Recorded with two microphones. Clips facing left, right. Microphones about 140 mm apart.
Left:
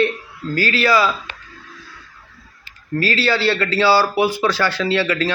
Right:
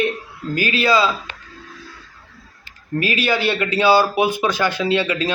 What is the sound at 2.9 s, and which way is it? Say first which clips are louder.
Speech: left 1 dB; 20° right (ahead or behind).